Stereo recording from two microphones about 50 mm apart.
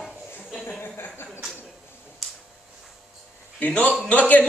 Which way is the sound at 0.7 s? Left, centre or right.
Left.